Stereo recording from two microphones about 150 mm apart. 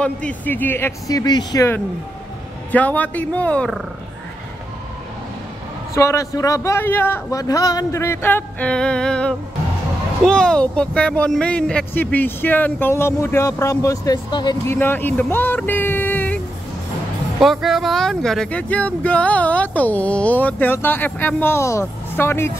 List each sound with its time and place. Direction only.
0.0 s speech: 10° left (ahead or behind)
2.7 s speech: 10° left (ahead or behind)
5.9 s speech: 20° left (ahead or behind)
14.7 s speech: 15° left (ahead or behind)
17.4 s speech: centre (ahead or behind); by 22.5 s 15° left (ahead or behind)